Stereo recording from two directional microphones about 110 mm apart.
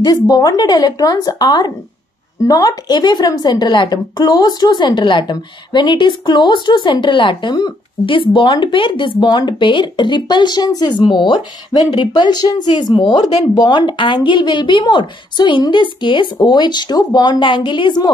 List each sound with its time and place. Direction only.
0.0 s a woman's voice: 35° left (ahead or behind)